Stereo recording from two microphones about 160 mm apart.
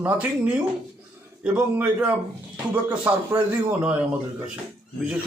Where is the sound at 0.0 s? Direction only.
10° right (ahead or behind).